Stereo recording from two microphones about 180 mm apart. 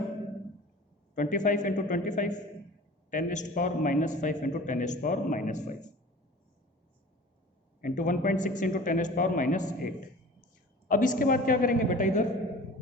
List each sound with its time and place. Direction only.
1.1 s a man's voice: 45° left (ahead or behind)
7.8 s a man's voice: 45° left (ahead or behind)